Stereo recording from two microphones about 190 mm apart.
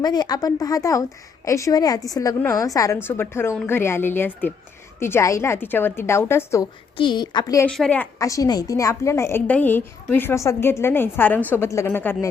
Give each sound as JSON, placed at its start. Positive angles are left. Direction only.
{"t": 0.0, "sound": "a woman's voice", "side_deg": 20}
{"t": 6.9, "sound": "speech", "side_deg": 25}
{"t": 7.7, "sound": "a woman's voice", "side_deg": 5}
{"t": 8.2, "sound": "a woman's voice", "side_deg": 15}